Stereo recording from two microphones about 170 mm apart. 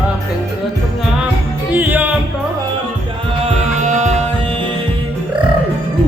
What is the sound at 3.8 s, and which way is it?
Music, 45° right (ahead or behind).